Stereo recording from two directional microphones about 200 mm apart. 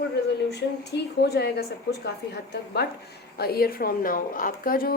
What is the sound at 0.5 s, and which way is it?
A woman's voice, 55° left (ahead or behind).